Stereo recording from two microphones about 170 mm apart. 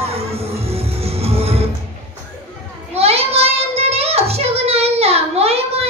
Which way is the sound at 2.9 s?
35° right (ahead or behind).